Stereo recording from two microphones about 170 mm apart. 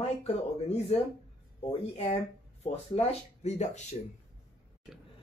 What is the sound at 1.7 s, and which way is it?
Speech, 40° left (ahead or behind).